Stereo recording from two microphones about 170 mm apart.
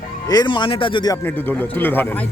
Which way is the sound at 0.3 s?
25° left (ahead or behind).